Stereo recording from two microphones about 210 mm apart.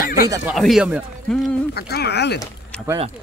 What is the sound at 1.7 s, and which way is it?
Speech, 50° left (ahead or behind).